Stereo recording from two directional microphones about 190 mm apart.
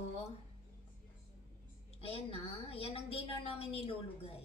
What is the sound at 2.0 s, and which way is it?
A woman's voice, 30° left (ahead or behind).